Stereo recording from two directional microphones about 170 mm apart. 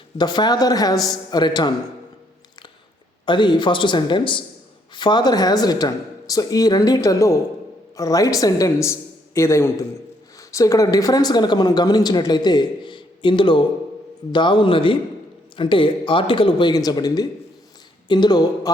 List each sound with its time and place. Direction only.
0.2 s speech: 25° left (ahead or behind)
0.9 s a man's voice: centre (ahead or behind)
1.3 s speech: 25° left (ahead or behind)
3.2 s speech: 25° left (ahead or behind)